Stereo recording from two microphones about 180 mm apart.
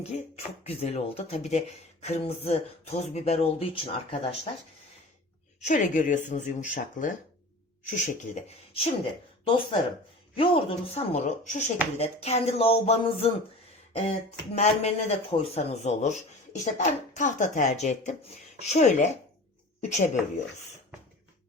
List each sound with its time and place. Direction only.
0.1 s speech: 35° left (ahead or behind)
5.5 s speech: 45° left (ahead or behind)
14.5 s speech: 35° left (ahead or behind)